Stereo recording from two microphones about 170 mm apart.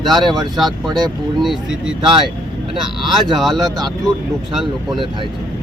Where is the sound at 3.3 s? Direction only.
Centre (ahead or behind).